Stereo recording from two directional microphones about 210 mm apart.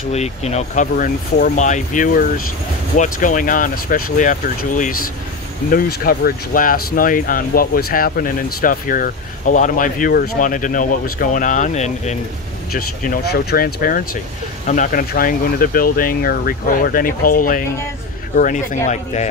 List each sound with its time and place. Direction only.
0.1 s speech: 30° left (ahead or behind)